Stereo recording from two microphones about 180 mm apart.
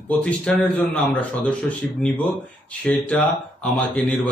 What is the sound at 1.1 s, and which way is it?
Speech, 5° left (ahead or behind).